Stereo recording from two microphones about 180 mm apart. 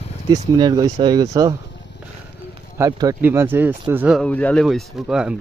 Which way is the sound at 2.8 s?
20° right (ahead or behind).